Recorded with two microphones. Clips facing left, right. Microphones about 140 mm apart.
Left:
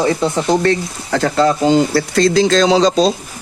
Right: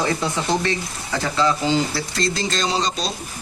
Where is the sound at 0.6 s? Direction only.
60° left (ahead or behind).